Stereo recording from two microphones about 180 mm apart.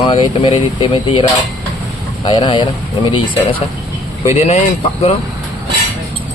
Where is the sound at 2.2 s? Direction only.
25° left (ahead or behind).